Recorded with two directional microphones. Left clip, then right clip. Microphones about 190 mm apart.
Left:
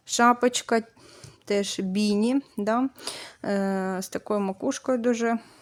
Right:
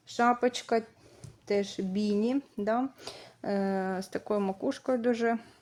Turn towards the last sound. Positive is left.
turn(degrees=30)  # may be behind; listen again after turning